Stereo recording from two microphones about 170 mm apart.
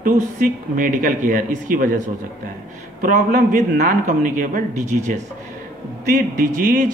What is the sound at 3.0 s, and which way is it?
Speech, 50° right (ahead or behind).